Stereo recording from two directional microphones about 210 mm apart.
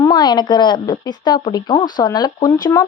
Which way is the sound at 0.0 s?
20° left (ahead or behind).